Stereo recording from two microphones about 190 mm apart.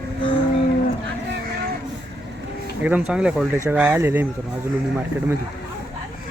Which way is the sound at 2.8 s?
5° right (ahead or behind).